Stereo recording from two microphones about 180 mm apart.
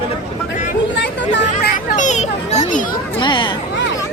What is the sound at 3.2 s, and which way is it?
Speech, 25° left (ahead or behind).